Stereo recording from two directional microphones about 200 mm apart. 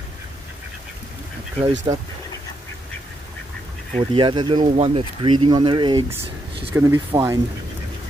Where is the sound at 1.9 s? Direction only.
20° right (ahead or behind).